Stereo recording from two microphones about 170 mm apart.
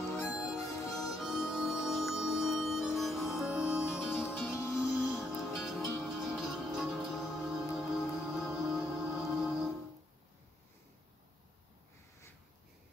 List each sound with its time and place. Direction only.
0.3 s music: 5° right (ahead or behind)
0.7 s music: 20° left (ahead or behind)
1.1 s harmonica: centre (ahead or behind)
3.0 s music: centre (ahead or behind)